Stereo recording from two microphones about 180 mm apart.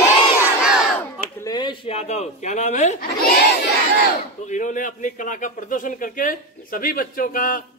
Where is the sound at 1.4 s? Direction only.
25° left (ahead or behind); by 3.0 s 40° left (ahead or behind).